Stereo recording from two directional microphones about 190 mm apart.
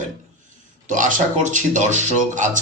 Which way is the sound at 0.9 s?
40° right (ahead or behind).